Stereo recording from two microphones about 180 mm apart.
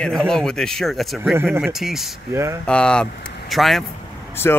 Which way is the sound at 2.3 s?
15° right (ahead or behind).